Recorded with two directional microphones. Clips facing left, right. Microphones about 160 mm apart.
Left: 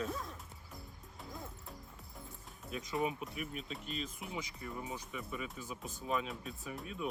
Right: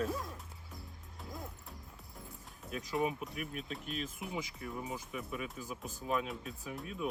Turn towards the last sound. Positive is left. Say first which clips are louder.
# right 1 dB
turn(degrees=0)  # may be behind; listen again after turning